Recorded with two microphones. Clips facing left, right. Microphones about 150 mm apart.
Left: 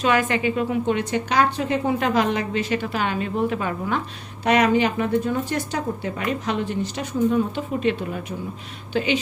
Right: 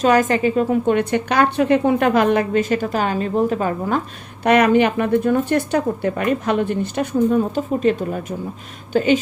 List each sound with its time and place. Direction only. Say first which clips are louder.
0.0 s a woman's voice: right 5 dB; 40° right (ahead or behind)
4.4 s a woman's voice: right 4 dB; 60° right (ahead or behind)